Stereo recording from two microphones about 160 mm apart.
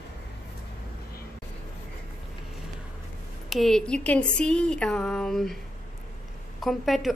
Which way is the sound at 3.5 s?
Centre (ahead or behind).